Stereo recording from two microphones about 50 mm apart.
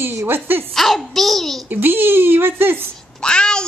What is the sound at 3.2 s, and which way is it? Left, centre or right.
Speech, centre.